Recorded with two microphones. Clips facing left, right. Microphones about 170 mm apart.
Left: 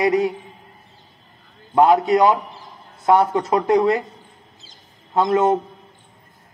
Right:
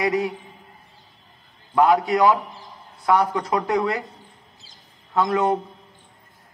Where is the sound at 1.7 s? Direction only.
20° left (ahead or behind).